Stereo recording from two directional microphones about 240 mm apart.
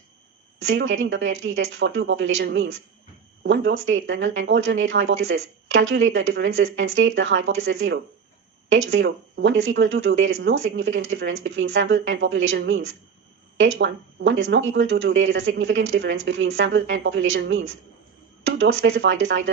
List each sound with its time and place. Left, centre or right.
0.7 s speech: right